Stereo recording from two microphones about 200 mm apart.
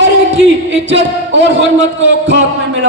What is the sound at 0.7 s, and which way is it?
Speech, 65° right (ahead or behind).